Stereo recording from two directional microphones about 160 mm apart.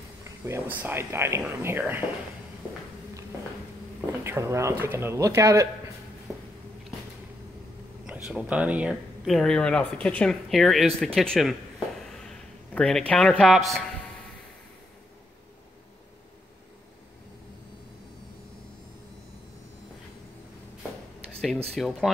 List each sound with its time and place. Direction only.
0.2 s speech: 15° right (ahead or behind)
4.2 s speech: 15° right (ahead or behind)
8.1 s a man's voice: 5° right (ahead or behind)
21.7 s speech: centre (ahead or behind)